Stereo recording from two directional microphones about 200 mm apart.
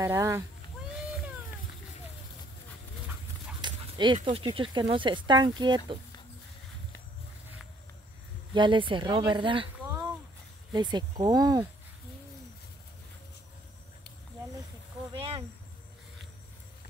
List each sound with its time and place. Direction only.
0.0 s speech: 15° right (ahead or behind)
3.6 s speech: 20° right (ahead or behind)
8.5 s speech: 25° right (ahead or behind)
10.7 s speech: 20° right (ahead or behind)
15.1 s a sound: 30° right (ahead or behind)